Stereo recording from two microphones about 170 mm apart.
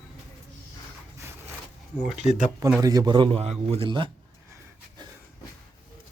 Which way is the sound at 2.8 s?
20° right (ahead or behind).